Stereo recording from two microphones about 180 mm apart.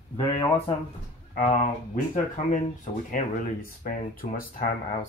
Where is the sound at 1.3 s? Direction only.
45° left (ahead or behind).